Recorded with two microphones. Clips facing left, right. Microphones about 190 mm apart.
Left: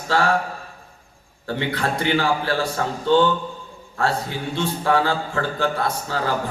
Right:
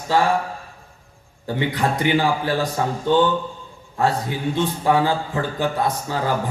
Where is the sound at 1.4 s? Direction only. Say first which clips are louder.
Right 2 dB; 15° right (ahead or behind).